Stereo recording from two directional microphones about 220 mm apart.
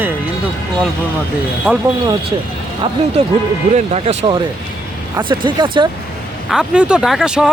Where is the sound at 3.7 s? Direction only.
30° right (ahead or behind).